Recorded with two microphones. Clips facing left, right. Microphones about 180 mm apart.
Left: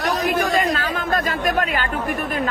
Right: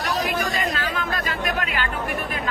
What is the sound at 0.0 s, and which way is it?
Chatter, 50° left (ahead or behind).